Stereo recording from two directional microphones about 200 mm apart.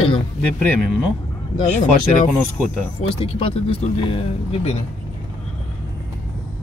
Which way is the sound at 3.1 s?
25° left (ahead or behind).